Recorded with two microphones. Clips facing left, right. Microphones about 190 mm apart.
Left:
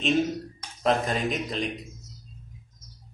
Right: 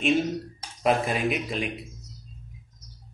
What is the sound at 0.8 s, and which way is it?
Speech, 10° right (ahead or behind).